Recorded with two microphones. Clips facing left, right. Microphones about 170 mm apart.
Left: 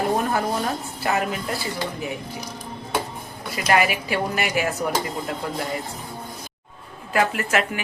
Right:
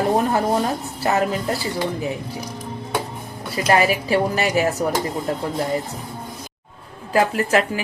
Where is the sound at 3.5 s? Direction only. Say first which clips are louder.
Right 3 dB; 30° right (ahead or behind).